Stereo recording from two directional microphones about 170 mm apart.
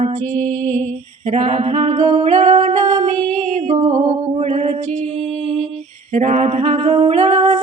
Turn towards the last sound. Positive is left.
turn(degrees=-40)  # may be behind; listen again after turning